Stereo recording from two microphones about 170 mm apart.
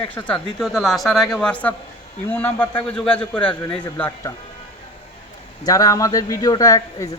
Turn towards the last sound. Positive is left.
turn(degrees=20)  # may be behind; listen again after turning